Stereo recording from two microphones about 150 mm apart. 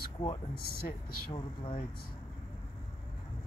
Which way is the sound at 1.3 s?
35° left (ahead or behind).